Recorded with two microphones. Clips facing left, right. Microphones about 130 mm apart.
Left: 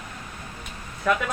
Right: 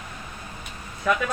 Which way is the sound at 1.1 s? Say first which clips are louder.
Even; centre (ahead or behind).